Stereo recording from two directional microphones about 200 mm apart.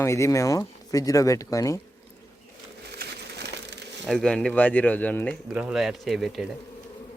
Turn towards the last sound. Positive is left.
turn(degrees=0)  # may be behind; listen again after turning